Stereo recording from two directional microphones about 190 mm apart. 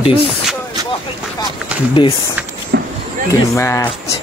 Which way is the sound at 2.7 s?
55° right (ahead or behind).